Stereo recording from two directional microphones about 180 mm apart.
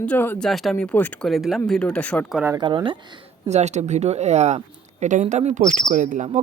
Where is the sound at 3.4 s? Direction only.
40° right (ahead or behind).